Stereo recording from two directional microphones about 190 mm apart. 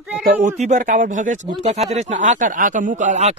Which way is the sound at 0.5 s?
40° right (ahead or behind).